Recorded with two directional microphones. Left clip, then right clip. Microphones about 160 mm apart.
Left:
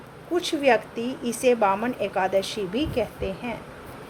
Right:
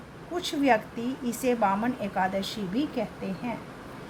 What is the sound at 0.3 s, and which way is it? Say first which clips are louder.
Speech: left 4 dB; 40° left (ahead or behind).